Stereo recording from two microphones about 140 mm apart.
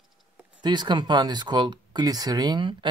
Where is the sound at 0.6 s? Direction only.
30° right (ahead or behind).